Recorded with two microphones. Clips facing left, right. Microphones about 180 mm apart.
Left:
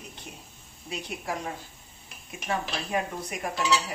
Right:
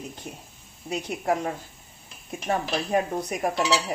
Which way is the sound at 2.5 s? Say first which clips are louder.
Right 5 dB; 40° right (ahead or behind).